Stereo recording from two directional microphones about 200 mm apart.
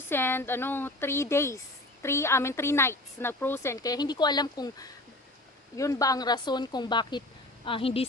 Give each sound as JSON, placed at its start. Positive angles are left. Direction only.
{"t": 0.1, "sound": "a woman's voice", "side_deg": 10}